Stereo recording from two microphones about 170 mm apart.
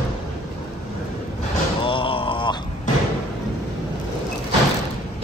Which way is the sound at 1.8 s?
30° left (ahead or behind).